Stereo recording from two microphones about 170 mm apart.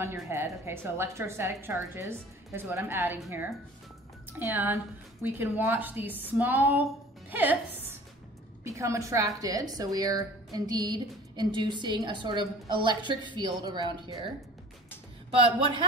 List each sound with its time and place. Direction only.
0.0 s a woman's voice: 15° right (ahead or behind)